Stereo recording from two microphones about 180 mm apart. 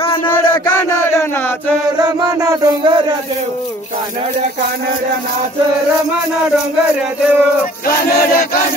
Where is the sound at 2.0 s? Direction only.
20° right (ahead or behind).